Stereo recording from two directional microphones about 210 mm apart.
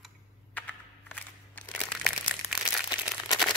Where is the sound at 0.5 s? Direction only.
5° left (ahead or behind).